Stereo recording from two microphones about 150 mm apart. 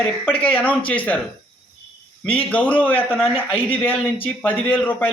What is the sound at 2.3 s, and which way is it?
A man's voice, 10° left (ahead or behind).